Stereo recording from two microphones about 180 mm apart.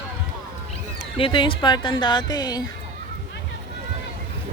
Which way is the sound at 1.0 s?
30° left (ahead or behind).